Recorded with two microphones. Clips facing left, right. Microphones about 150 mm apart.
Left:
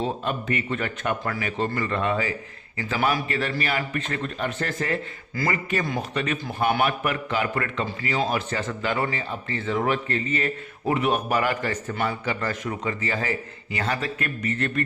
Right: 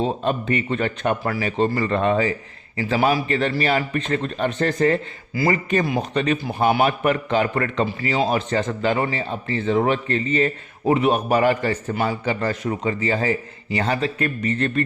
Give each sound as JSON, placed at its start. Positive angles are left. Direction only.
{"t": 0.0, "sound": "a man's voice", "side_deg": -30}
{"t": 6.0, "sound": "a man's voice", "side_deg": -30}